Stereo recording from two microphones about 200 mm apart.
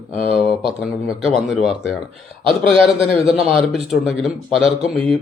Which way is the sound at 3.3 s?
5° right (ahead or behind).